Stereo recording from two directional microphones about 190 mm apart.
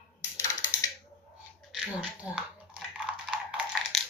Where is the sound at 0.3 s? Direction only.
15° left (ahead or behind).